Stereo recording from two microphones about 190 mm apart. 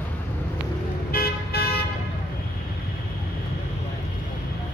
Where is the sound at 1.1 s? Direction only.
55° left (ahead or behind).